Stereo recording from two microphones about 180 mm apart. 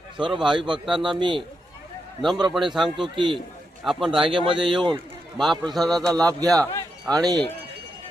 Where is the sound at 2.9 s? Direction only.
25° right (ahead or behind).